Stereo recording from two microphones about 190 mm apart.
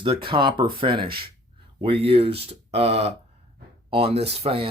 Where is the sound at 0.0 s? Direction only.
25° right (ahead or behind).